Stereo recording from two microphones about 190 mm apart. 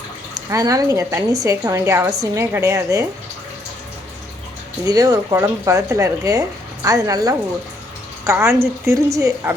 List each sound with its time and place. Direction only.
0.5 s a woman's voice: 20° right (ahead or behind)
4.9 s a woman's voice: 20° right (ahead or behind)